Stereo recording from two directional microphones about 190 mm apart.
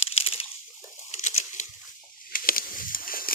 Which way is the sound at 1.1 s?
40° left (ahead or behind).